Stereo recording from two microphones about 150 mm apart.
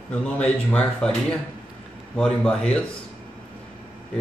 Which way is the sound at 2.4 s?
5° left (ahead or behind).